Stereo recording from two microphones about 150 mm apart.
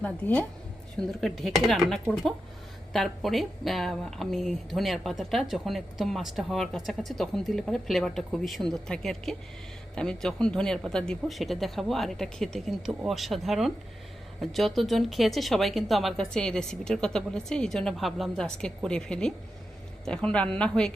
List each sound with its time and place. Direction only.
0.0 s a woman's voice: 10° left (ahead or behind)